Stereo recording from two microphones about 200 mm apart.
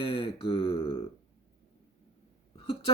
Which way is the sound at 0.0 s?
25° left (ahead or behind).